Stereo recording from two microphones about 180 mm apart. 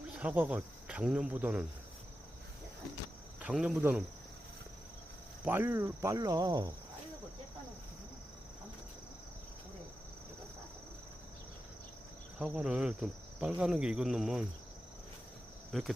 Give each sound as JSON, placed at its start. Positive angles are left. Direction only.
{"t": 0.1, "sound": "speech", "side_deg": -10}
{"t": 3.4, "sound": "cricket", "side_deg": -5}
{"t": 5.5, "sound": "speech", "side_deg": -10}
{"t": 12.4, "sound": "cricket", "side_deg": -5}
{"t": 15.7, "sound": "cricket", "side_deg": 0}